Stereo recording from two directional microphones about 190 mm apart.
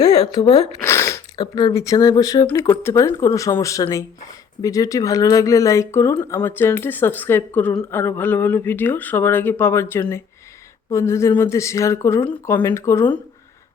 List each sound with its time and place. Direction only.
0.0 s speech: 20° left (ahead or behind)